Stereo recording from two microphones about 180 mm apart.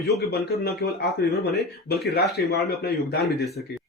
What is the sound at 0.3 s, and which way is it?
Speech, 60° left (ahead or behind).